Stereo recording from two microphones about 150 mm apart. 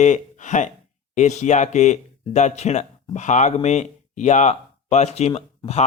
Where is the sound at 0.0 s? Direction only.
55° left (ahead or behind).